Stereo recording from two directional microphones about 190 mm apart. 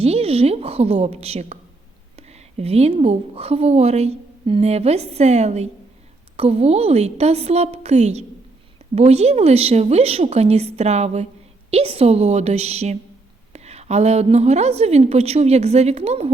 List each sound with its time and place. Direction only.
0.0 s a woman's voice: 30° right (ahead or behind)